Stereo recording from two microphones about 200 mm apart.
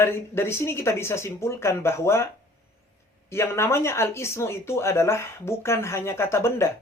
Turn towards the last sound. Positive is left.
turn(degrees=15)  # may be behind; listen again after turning